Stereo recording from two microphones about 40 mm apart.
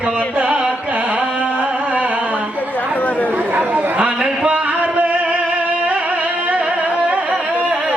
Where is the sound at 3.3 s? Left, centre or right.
Right.